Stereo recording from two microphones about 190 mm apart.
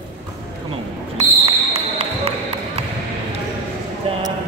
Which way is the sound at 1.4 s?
35° right (ahead or behind).